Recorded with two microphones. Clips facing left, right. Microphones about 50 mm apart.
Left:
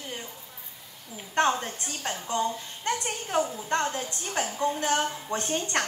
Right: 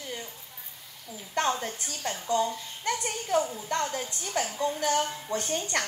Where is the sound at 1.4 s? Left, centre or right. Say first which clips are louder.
Left 3 dB; left.